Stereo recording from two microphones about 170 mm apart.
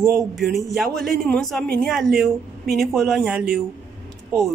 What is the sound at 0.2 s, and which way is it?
Speech, centre (ahead or behind).